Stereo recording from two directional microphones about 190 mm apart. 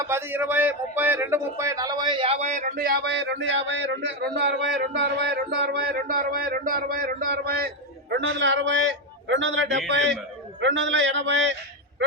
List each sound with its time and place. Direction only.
0.1 s speech: 10° right (ahead or behind); by 7.7 s 55° right (ahead or behind)
8.1 s a man's voice: 70° right (ahead or behind)